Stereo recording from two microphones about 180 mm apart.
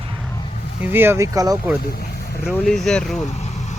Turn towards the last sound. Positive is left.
turn(degrees=0)  # may be behind; listen again after turning